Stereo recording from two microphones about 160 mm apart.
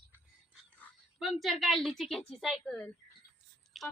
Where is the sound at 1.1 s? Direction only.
Centre (ahead or behind).